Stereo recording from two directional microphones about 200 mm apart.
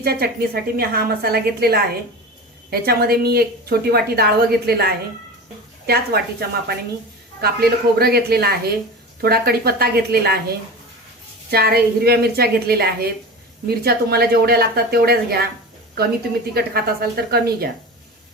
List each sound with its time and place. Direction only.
0.0 s a woman's voice: 50° right (ahead or behind)
11.5 s a woman's voice: 50° right (ahead or behind)
16.6 s a woman's voice: 50° right (ahead or behind)